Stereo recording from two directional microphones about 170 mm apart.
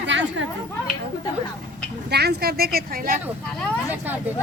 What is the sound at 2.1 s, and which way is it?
Speech, 70° right (ahead or behind).